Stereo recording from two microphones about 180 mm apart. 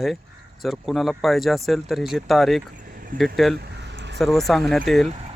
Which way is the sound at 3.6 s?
75° right (ahead or behind).